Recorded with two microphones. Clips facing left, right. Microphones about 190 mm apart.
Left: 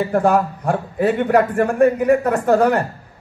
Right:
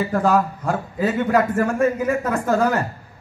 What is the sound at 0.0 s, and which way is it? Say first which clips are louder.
A man's voice: left 2 dB; 55° left (ahead or behind).